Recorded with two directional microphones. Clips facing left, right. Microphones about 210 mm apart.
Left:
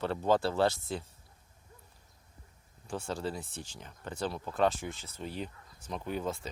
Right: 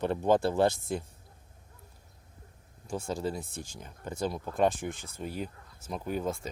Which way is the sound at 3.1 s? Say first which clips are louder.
Right 3 dB; 10° right (ahead or behind).